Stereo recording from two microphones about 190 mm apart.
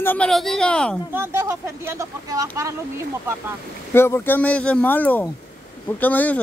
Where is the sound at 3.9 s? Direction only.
10° left (ahead or behind).